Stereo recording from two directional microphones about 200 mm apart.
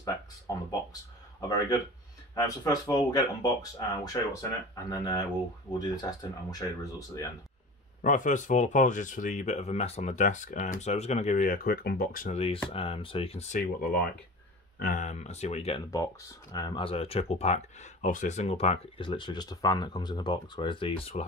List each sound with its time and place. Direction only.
0.0 s speech: 20° left (ahead or behind)
2.3 s speech: 20° left (ahead or behind)
8.0 s speech: 40° left (ahead or behind)
12.6 s speech: 30° left (ahead or behind)
13.6 s speech: 50° left (ahead or behind); by 15.8 s 30° left (ahead or behind)
15.9 s speech: 15° left (ahead or behind)